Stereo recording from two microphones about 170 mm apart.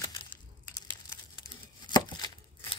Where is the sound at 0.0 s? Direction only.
30° left (ahead or behind).